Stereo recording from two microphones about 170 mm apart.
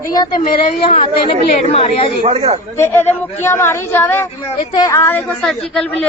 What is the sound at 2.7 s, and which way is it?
Speech, 15° left (ahead or behind).